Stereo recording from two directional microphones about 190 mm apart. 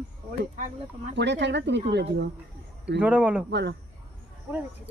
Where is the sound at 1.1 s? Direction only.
65° right (ahead or behind).